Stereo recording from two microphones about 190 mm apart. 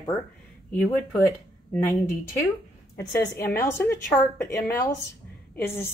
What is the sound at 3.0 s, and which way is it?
A woman's voice, 10° left (ahead or behind).